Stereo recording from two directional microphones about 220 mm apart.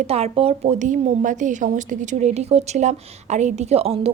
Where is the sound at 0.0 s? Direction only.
25° right (ahead or behind).